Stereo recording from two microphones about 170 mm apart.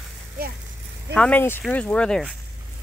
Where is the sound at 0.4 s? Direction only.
60° right (ahead or behind).